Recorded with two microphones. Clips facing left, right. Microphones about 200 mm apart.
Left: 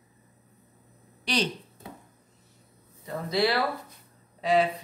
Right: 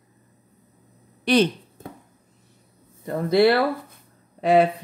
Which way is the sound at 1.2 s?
55° right (ahead or behind).